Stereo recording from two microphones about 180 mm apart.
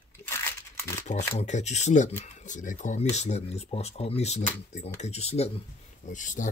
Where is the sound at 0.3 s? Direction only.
15° left (ahead or behind).